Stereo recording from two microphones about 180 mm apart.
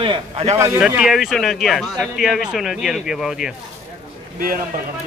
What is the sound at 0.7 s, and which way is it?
Speech, 5° right (ahead or behind).